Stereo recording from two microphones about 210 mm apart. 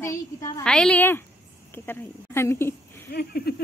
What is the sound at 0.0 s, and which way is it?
Speech, 15° left (ahead or behind).